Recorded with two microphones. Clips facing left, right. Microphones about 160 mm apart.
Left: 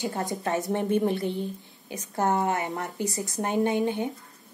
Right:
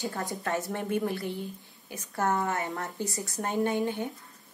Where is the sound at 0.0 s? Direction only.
20° left (ahead or behind).